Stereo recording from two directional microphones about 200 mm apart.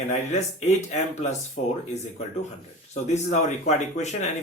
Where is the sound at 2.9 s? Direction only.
35° left (ahead or behind).